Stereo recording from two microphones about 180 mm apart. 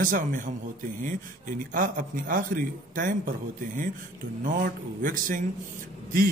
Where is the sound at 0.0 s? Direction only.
50° right (ahead or behind).